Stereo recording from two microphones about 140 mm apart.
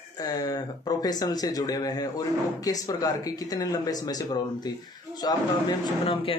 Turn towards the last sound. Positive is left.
turn(degrees=40)  # may be behind; listen again after turning